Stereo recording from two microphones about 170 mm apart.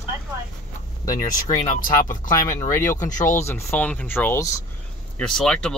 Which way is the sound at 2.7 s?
15° left (ahead or behind).